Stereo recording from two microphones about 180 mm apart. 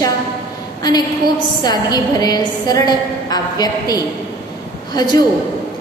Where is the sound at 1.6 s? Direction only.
20° left (ahead or behind).